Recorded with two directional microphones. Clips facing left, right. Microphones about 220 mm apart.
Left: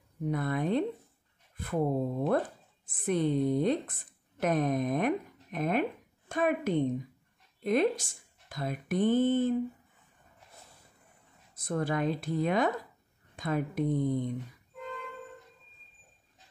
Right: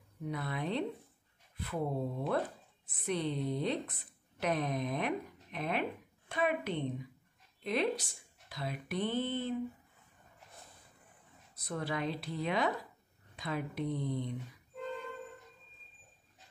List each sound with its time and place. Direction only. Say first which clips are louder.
0.3 s a woman's voice: left 7 dB; 50° left (ahead or behind)
11.5 s speech: left 6 dB; 50° left (ahead or behind)